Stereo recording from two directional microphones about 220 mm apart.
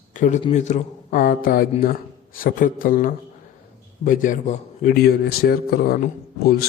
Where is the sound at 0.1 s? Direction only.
35° left (ahead or behind).